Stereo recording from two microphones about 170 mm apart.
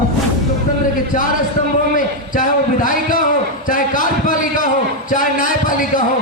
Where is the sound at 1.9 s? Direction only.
50° left (ahead or behind).